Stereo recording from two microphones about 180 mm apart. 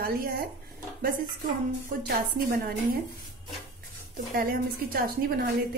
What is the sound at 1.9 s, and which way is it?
Speech, 55° right (ahead or behind).